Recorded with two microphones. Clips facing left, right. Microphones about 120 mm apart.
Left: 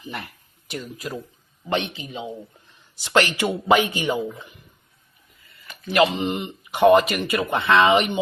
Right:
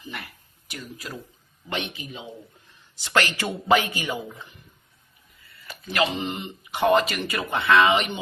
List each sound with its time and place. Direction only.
0.0 s a sound: 30° left (ahead or behind)
0.7 s speech: 25° left (ahead or behind)
5.5 s speech: 25° left (ahead or behind)